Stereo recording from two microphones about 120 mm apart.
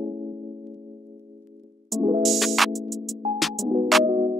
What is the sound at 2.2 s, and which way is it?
Music, centre (ahead or behind).